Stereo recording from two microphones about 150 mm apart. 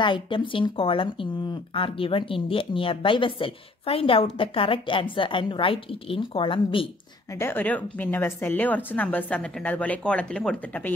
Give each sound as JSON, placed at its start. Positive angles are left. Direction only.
{"t": 0.0, "sound": "speech", "side_deg": 30}
{"t": 7.3, "sound": "speech", "side_deg": 15}